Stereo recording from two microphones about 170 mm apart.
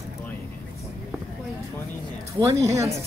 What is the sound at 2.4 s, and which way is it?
Speech, 15° right (ahead or behind).